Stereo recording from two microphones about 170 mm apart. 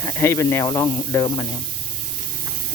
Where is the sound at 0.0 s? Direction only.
15° left (ahead or behind).